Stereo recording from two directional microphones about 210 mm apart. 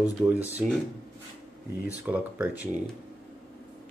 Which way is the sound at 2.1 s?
5° right (ahead or behind).